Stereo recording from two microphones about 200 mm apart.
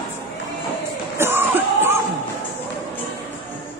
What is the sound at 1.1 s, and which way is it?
Music, 10° right (ahead or behind).